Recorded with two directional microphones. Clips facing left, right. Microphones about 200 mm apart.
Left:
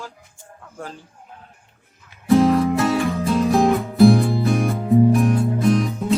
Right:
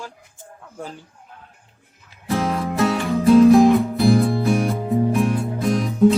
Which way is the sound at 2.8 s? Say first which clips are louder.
Even; centre (ahead or behind).